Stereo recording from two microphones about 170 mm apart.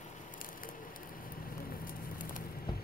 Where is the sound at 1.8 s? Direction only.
55° left (ahead or behind).